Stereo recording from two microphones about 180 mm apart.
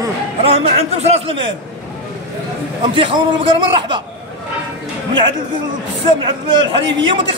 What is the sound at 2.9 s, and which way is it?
Speech, 30° right (ahead or behind).